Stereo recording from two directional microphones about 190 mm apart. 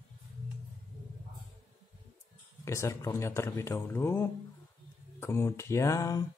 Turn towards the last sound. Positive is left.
turn(degrees=15)  # may be behind; listen again after turning